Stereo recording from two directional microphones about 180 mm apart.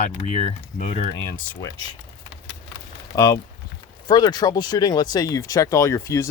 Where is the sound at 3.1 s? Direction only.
20° left (ahead or behind).